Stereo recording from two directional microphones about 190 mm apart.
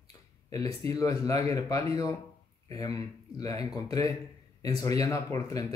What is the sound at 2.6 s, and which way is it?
Speech, 20° left (ahead or behind).